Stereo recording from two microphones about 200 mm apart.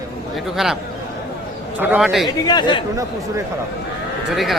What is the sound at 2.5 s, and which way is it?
Speech, 20° left (ahead or behind).